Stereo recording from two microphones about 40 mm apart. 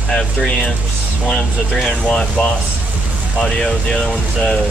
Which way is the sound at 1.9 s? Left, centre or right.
Left.